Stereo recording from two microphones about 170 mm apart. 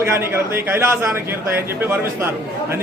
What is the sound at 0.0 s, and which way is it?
A man's voice, 15° right (ahead or behind).